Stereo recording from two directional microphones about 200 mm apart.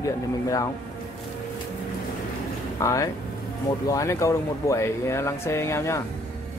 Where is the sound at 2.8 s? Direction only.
15° left (ahead or behind).